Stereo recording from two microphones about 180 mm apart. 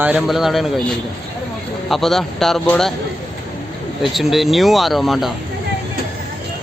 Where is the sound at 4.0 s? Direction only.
Centre (ahead or behind).